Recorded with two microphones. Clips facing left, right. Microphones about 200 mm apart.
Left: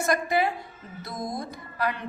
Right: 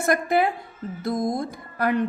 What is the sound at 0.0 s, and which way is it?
A woman's voice, 55° right (ahead or behind).